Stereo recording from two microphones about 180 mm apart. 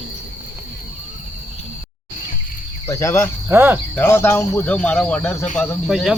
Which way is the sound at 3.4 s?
10° right (ahead or behind).